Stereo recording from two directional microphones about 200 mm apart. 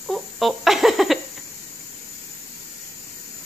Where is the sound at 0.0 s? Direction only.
Centre (ahead or behind).